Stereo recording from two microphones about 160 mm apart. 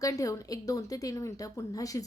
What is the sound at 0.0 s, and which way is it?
A woman's voice, 20° left (ahead or behind).